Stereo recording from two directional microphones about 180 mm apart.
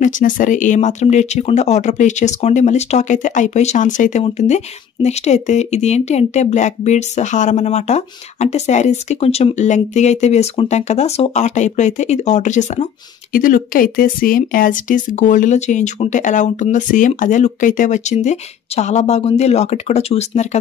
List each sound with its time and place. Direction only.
0.0 s a woman's voice: 45° left (ahead or behind)